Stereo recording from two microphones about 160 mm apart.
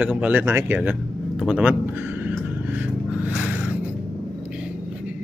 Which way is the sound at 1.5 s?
10° right (ahead or behind).